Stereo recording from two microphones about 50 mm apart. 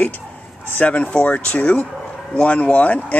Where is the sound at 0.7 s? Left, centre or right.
Left.